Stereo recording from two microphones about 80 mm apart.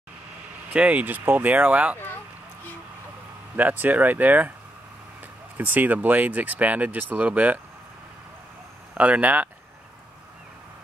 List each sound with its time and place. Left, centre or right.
0.7 s speech: centre
3.5 s speech: right
5.6 s speech: right
8.9 s speech: centre